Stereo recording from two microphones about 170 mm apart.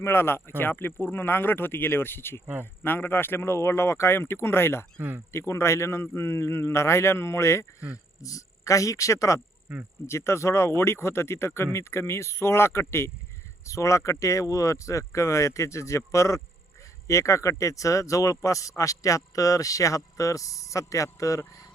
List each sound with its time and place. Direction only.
0.0 s speech: 15° left (ahead or behind)
4.9 s speech: 10° right (ahead or behind)
5.3 s speech: 15° left (ahead or behind)
9.7 s speech: 5° right (ahead or behind)
10.1 s speech: 15° left (ahead or behind)